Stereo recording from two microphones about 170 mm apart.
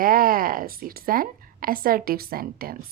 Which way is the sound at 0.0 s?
55° right (ahead or behind).